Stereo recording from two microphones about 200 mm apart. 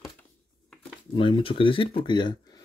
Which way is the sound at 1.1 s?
25° left (ahead or behind).